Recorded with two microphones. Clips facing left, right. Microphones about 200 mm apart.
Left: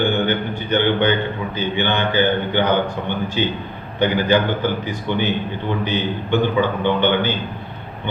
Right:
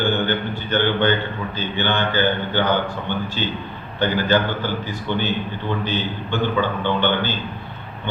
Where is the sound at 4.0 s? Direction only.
15° left (ahead or behind).